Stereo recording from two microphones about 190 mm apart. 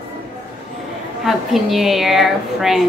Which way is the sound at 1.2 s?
Centre (ahead or behind).